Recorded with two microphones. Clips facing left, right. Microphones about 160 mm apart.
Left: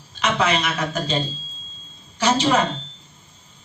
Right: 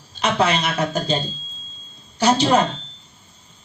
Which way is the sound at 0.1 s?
35° right (ahead or behind).